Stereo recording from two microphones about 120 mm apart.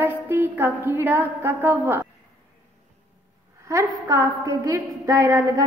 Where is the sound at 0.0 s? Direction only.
15° right (ahead or behind).